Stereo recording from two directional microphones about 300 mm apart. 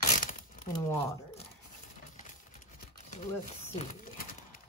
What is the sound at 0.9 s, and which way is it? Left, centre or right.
Speech, centre.